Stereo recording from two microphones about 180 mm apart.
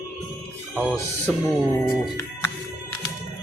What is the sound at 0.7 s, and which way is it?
Speech, 5° right (ahead or behind).